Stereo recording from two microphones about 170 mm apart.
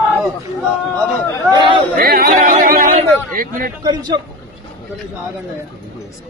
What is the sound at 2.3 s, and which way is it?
Speech, 45° right (ahead or behind).